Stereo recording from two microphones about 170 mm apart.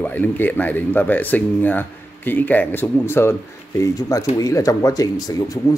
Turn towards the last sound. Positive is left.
turn(degrees=20)  # may be behind; listen again after turning